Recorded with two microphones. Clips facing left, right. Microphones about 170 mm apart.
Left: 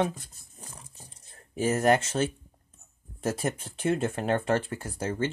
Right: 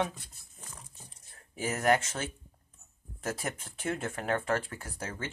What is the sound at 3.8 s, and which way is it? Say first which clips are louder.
Speech: left 7 dB; 25° left (ahead or behind).